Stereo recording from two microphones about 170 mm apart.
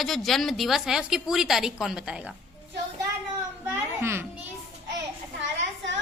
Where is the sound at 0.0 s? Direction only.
Centre (ahead or behind).